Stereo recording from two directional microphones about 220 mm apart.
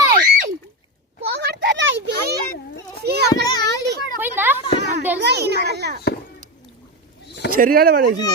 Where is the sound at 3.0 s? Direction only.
45° right (ahead or behind).